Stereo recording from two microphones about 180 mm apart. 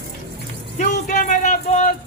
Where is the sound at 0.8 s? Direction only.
40° left (ahead or behind).